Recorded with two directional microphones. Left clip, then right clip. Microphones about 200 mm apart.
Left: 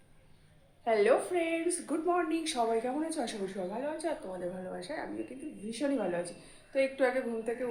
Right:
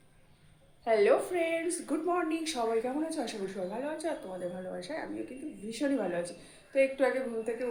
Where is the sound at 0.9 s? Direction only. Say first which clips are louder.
Right 1 dB; 5° left (ahead or behind).